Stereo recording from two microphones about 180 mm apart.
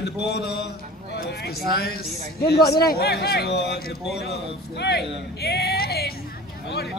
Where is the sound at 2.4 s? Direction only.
65° left (ahead or behind).